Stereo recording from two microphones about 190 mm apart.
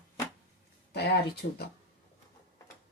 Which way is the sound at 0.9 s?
60° left (ahead or behind).